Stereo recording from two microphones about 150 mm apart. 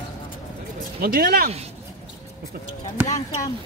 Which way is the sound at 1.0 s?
90° right.